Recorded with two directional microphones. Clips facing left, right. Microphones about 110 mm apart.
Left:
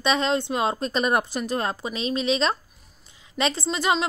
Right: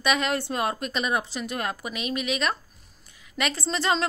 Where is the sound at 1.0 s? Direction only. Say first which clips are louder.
Left 4 dB; 45° left (ahead or behind).